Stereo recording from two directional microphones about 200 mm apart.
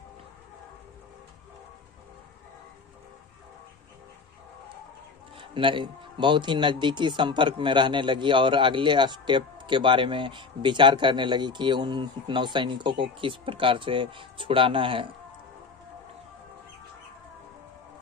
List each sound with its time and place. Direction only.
5.4 s speech: 25° right (ahead or behind)